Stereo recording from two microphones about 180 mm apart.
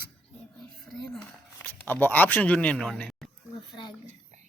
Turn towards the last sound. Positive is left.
turn(degrees=0)  # may be behind; listen again after turning